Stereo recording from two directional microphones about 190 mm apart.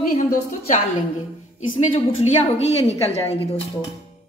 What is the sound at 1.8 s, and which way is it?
A woman's voice, 35° left (ahead or behind).